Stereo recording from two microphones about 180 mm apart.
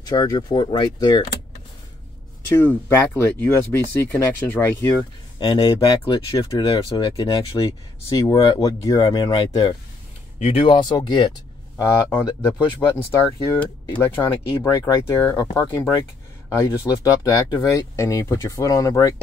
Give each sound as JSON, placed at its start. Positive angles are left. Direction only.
{"t": 0.0, "sound": "speech", "side_deg": 20}
{"t": 2.5, "sound": "speech", "side_deg": 10}
{"t": 11.7, "sound": "speech", "side_deg": 10}
{"t": 13.9, "sound": "speech", "side_deg": 10}